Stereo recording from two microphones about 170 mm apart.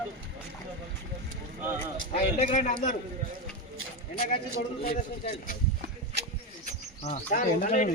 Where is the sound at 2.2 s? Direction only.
45° left (ahead or behind).